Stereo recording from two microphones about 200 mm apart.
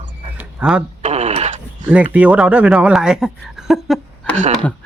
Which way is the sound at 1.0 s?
35° right (ahead or behind).